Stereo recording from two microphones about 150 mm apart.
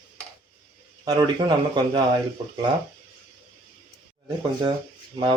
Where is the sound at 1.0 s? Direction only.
25° right (ahead or behind).